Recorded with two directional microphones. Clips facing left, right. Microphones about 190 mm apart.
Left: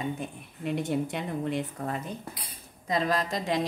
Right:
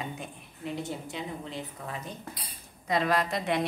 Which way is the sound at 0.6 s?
60° left (ahead or behind).